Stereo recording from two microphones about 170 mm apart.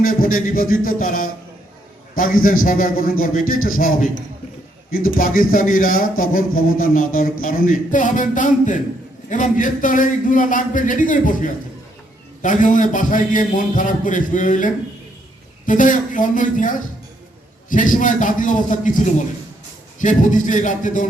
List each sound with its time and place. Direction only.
0.0 s a man's voice: 55° left (ahead or behind)